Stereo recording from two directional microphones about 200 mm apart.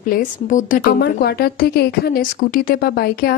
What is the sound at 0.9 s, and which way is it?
Speech, 50° left (ahead or behind).